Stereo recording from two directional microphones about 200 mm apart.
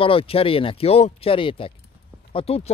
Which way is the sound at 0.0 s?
25° left (ahead or behind).